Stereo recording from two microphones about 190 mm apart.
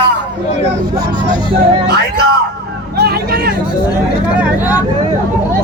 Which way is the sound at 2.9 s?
55° right (ahead or behind).